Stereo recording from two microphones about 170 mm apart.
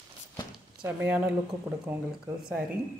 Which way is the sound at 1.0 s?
10° right (ahead or behind).